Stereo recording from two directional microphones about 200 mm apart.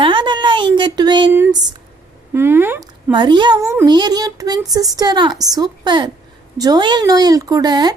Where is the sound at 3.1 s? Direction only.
25° right (ahead or behind).